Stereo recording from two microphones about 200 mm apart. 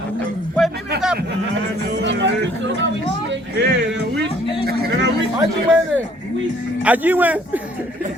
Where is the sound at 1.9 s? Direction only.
65° right (ahead or behind).